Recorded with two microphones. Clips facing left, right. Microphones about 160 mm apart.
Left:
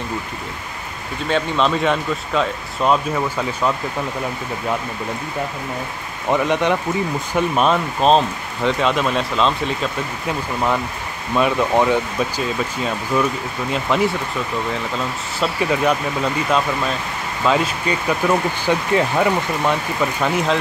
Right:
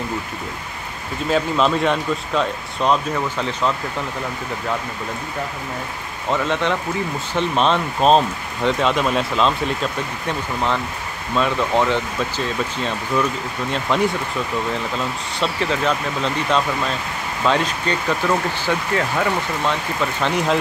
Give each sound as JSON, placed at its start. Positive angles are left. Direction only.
{"t": 1.3, "sound": "speech", "side_deg": 0}
{"t": 6.3, "sound": "speech", "side_deg": 15}
{"t": 10.2, "sound": "speech", "side_deg": 10}
{"t": 15.3, "sound": "speech", "side_deg": 10}